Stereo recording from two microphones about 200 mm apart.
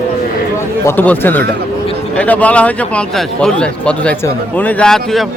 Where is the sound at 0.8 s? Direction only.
10° left (ahead or behind).